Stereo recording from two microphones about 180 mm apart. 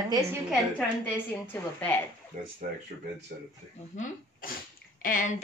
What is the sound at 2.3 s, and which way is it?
Speech, 45° right (ahead or behind).